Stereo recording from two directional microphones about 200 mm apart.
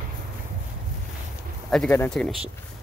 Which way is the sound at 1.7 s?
5° left (ahead or behind).